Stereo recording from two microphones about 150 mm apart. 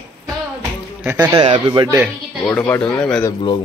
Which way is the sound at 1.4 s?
35° right (ahead or behind).